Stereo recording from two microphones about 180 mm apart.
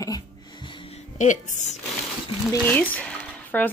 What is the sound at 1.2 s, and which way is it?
Speech, 40° left (ahead or behind).